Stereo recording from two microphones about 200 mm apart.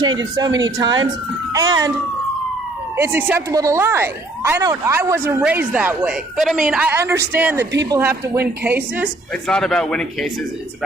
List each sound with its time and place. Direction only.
0.0 s speech: 20° right (ahead or behind)
3.0 s speech: 10° right (ahead or behind)
7.6 s speech: 60° right (ahead or behind)
7.9 s speech: 15° right (ahead or behind)
9.3 s speech: 5° left (ahead or behind)